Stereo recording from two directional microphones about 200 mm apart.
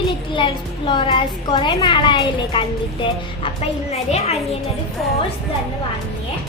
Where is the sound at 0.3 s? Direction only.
25° left (ahead or behind).